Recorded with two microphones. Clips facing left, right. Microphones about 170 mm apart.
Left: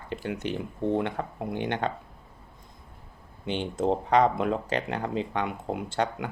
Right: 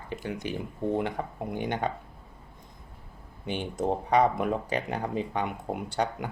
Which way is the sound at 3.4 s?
10° right (ahead or behind).